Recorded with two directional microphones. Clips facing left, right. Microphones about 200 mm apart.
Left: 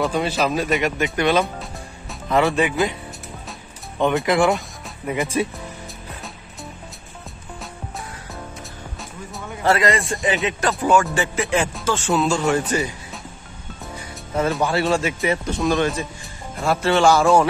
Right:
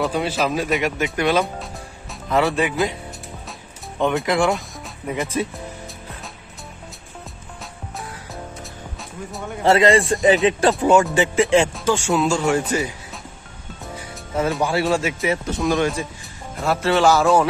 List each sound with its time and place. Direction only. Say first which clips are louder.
0.0 s speech: left 1 dB; 5° right (ahead or behind)
4.0 s speech: left 1 dB; centre (ahead or behind)
9.6 s speech: right 4 dB; 25° right (ahead or behind)
11.8 s speech: right 1 dB; 15° right (ahead or behind)